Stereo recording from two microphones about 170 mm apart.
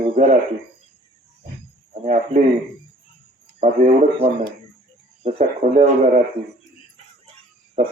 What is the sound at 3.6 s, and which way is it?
A man's voice, 40° right (ahead or behind).